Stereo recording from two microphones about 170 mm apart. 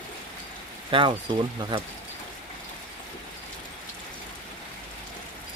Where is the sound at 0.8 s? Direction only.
30° right (ahead or behind).